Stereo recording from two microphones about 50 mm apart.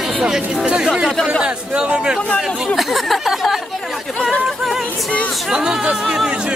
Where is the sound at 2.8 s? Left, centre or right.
Centre.